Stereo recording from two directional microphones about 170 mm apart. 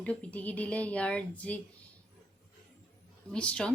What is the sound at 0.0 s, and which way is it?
A woman's voice, 10° left (ahead or behind).